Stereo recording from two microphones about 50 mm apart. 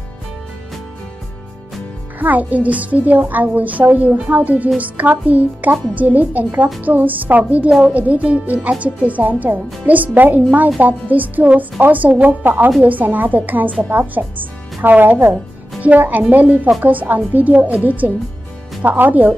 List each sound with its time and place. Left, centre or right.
2.1 s a child's voice: right